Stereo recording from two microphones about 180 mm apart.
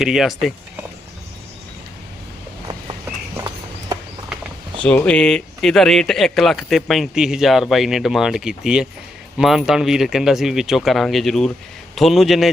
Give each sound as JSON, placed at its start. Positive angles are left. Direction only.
{"t": 0.0, "sound": "speech", "side_deg": 0}
{"t": 3.3, "sound": "horse", "side_deg": -20}
{"t": 4.8, "sound": "speech", "side_deg": 5}